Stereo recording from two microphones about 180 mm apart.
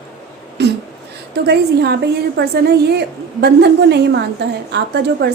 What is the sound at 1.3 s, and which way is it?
A woman's voice, 65° right (ahead or behind).